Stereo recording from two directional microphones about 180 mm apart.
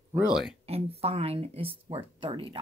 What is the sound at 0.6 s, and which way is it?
Speech, 35° right (ahead or behind).